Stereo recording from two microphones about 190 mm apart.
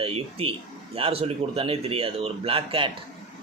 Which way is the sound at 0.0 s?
30° right (ahead or behind).